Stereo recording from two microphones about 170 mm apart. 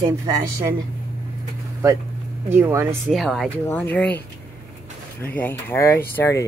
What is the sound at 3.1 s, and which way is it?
Speech, centre (ahead or behind).